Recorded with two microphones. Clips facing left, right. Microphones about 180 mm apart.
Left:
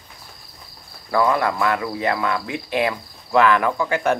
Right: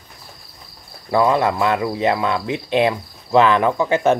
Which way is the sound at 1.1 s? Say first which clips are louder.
Right 3 dB; 20° right (ahead or behind).